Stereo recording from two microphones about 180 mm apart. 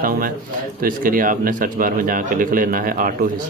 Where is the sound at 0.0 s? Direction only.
55° right (ahead or behind).